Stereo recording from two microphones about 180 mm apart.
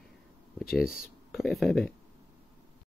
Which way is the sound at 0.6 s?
55° left (ahead or behind).